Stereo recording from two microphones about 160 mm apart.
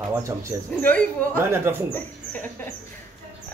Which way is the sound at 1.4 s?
15° right (ahead or behind).